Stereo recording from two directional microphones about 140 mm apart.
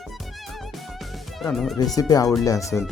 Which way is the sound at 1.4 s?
Centre (ahead or behind).